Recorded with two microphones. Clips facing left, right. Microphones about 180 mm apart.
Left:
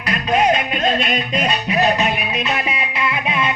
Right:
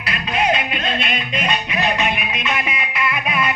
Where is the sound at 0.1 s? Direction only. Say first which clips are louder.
Left 4 dB; 45° left (ahead or behind).